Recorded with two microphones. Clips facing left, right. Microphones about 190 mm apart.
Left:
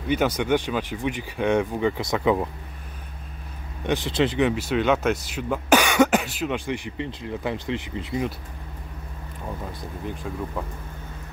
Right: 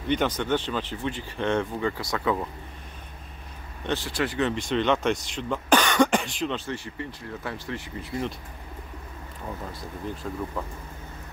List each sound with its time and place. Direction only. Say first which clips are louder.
0.1 s speech: left 3 dB; 10° left (ahead or behind)
3.8 s speech: left 5 dB; 15° left (ahead or behind)
10.3 s speech: even; 5° left (ahead or behind)